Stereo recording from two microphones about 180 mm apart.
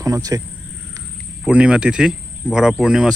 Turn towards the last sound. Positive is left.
turn(degrees=-5)  # may be behind; listen again after turning